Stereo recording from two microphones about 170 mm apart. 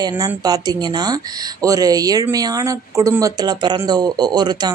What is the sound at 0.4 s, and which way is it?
Speech, 25° right (ahead or behind).